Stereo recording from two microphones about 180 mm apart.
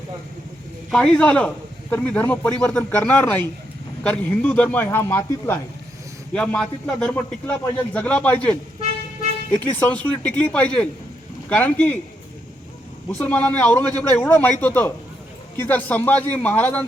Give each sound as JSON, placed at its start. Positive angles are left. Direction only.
{"t": 0.9, "sound": "a man's voice", "side_deg": 5}
{"t": 9.7, "sound": "a man's voice", "side_deg": 10}
{"t": 13.1, "sound": "a man's voice", "side_deg": 10}